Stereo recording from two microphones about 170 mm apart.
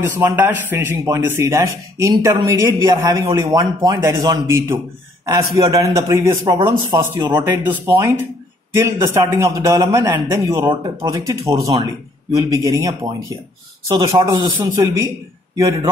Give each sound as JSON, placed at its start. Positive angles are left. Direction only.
{"t": 0.0, "sound": "a man's voice", "side_deg": -10}
{"t": 7.6, "sound": "a man's voice", "side_deg": -15}
{"t": 11.7, "sound": "speech", "side_deg": -35}
{"t": 12.4, "sound": "a man's voice", "side_deg": -20}